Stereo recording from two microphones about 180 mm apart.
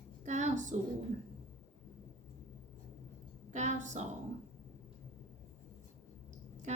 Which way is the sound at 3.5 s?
40° right (ahead or behind).